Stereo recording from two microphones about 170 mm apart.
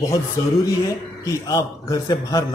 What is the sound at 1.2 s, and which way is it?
Speech, 20° left (ahead or behind).